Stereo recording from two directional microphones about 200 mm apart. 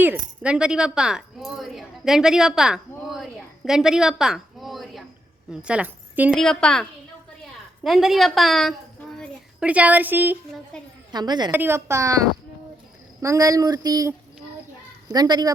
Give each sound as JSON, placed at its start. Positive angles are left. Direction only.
{"t": 0.0, "sound": "a woman's voice", "side_deg": -5}
{"t": 6.3, "sound": "a woman's voice", "side_deg": 5}
{"t": 7.9, "sound": "a woman's voice", "side_deg": 0}
{"t": 9.1, "sound": "a sound", "side_deg": -5}
{"t": 11.1, "sound": "speech", "side_deg": -20}
{"t": 13.2, "sound": "speech", "side_deg": -15}